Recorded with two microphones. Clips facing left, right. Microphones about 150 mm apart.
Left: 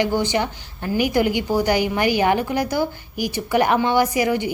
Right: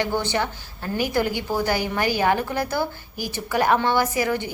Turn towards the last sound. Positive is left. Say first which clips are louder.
# left 4 dB
turn(degrees=15)  # may be behind; listen again after turning